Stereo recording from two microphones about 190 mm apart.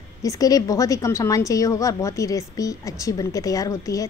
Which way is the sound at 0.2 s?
20° left (ahead or behind).